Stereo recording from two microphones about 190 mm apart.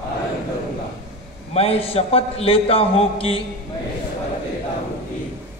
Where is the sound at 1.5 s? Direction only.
30° left (ahead or behind).